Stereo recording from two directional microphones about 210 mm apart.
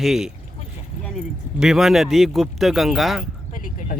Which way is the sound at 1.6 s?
Centre (ahead or behind).